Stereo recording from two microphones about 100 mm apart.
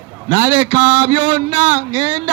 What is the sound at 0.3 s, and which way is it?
A man's voice, 90° right.